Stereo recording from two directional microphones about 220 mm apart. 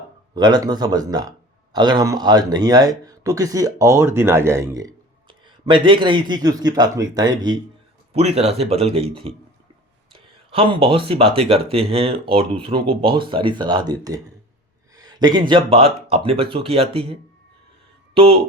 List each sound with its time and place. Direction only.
0.3 s speech: 20° right (ahead or behind)
10.1 s a sound: 25° right (ahead or behind)
11.3 s speech: 25° right (ahead or behind)